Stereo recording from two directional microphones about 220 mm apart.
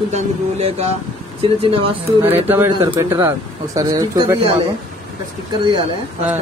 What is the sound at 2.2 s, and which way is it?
Speech, 10° right (ahead or behind).